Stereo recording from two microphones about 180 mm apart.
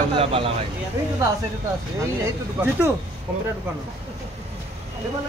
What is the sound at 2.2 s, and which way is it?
Speech, 10° right (ahead or behind).